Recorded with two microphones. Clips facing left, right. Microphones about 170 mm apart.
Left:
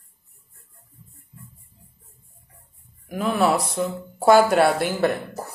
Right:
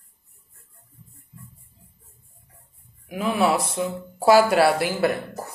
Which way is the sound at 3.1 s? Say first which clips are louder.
Left 1 dB; 5° right (ahead or behind).